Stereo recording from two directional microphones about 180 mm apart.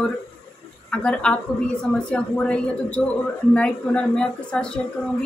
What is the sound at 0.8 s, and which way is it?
A woman's voice, 5° left (ahead or behind).